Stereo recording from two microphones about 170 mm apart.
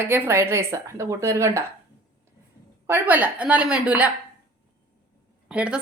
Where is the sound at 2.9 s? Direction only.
10° right (ahead or behind).